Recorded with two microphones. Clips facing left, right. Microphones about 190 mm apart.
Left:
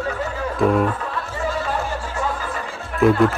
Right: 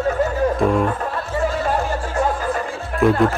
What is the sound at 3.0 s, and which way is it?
Speech, centre (ahead or behind).